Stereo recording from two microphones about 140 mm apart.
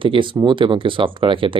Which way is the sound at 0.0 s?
35° right (ahead or behind).